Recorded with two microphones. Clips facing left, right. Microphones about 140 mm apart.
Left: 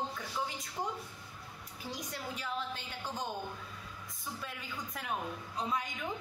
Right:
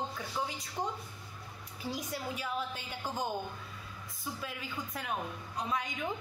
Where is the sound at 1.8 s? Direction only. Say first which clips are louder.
Right 4 dB; 5° right (ahead or behind).